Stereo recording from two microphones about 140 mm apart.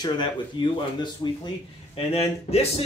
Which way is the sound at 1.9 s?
45° left (ahead or behind).